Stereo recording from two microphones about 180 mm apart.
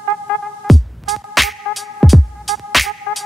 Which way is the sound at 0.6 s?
Centre (ahead or behind).